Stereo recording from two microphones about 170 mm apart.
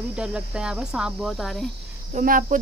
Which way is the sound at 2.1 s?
50° right (ahead or behind).